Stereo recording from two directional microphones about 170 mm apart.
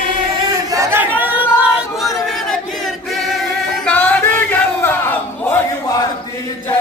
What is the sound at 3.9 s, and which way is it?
Battle cry, 10° left (ahead or behind).